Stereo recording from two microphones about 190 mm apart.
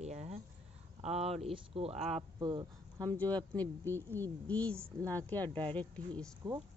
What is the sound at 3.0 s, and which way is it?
Speech, 10° left (ahead or behind).